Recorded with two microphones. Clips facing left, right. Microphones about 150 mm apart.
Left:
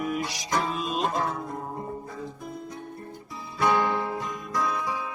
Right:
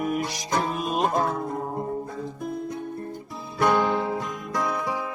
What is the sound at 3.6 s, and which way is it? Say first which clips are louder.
Music: right 2 dB; 60° right (ahead or behind).